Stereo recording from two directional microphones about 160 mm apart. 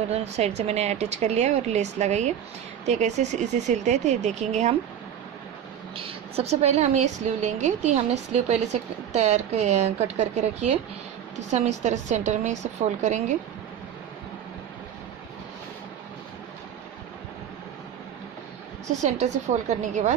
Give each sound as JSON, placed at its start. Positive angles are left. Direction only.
{"t": 0.1, "sound": "a woman's voice", "side_deg": -40}
{"t": 5.9, "sound": "a woman's voice", "side_deg": -35}
{"t": 18.9, "sound": "a woman's voice", "side_deg": -45}